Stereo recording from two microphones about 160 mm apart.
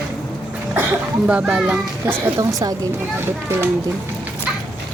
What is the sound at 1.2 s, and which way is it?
A child's voice, 10° right (ahead or behind).